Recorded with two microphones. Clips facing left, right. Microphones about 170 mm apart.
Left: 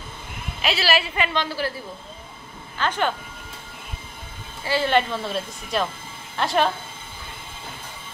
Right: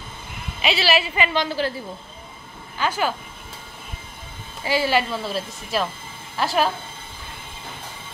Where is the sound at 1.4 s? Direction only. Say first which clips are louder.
Right 3 dB; 20° right (ahead or behind).